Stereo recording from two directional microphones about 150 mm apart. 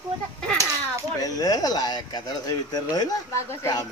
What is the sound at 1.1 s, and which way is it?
Speech, 25° left (ahead or behind).